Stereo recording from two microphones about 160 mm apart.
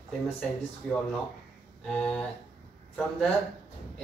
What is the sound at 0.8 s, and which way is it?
Speech, 5° left (ahead or behind).